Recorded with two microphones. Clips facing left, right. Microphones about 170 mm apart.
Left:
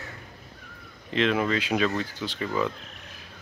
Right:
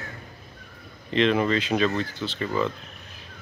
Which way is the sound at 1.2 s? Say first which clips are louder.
Right 3 dB; 5° left (ahead or behind).